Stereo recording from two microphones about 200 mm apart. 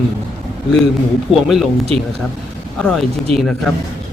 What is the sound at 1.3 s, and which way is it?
Speech, centre (ahead or behind).